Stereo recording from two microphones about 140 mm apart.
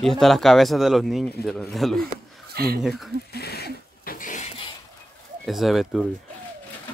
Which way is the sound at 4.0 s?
80° left.